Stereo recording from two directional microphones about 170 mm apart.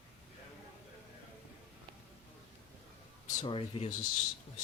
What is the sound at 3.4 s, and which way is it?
Speech, 30° left (ahead or behind).